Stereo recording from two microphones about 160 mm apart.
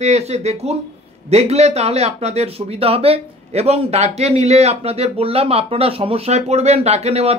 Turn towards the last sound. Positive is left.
turn(degrees=-40)  # may be behind; listen again after turning